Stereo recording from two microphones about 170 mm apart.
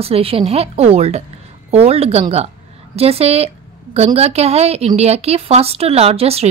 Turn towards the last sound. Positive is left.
turn(degrees=-35)  # may be behind; listen again after turning